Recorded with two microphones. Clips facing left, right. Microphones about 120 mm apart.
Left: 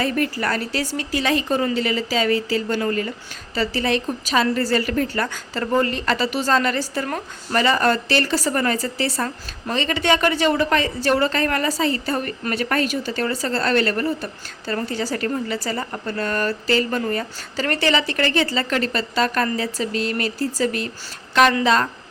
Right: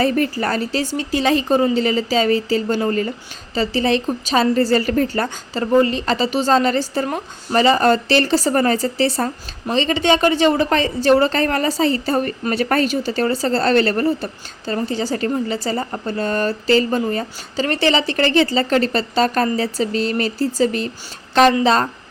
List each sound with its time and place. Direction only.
0.0 s a woman's voice: 30° right (ahead or behind)
5.5 s a woman's voice: 20° right (ahead or behind)